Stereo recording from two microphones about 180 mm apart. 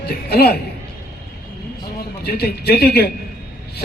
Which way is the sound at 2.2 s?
60° left (ahead or behind).